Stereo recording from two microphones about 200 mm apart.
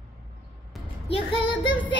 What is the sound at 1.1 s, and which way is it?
Child singing, 25° left (ahead or behind).